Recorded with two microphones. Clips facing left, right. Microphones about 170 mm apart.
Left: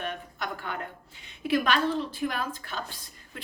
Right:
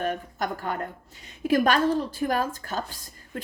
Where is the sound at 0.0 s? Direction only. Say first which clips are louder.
Right 6 dB; 45° right (ahead or behind).